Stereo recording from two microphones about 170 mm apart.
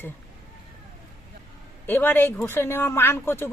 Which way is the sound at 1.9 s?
10° left (ahead or behind).